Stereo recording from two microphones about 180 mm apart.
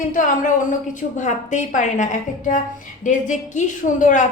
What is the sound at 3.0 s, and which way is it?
A woman's voice, 45° left (ahead or behind).